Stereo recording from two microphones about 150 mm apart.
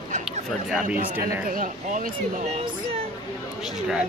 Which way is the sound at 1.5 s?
65° right (ahead or behind).